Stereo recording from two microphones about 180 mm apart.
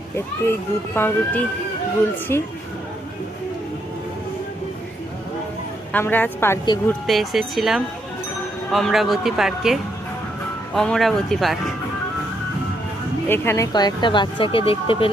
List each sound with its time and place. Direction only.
0.9 s a woman's voice: 10° left (ahead or behind)
5.9 s a woman's voice: 10° left (ahead or behind)
7.1 s a man's voice: centre (ahead or behind)
13.2 s speech: 15° left (ahead or behind); by 15.1 s 30° left (ahead or behind)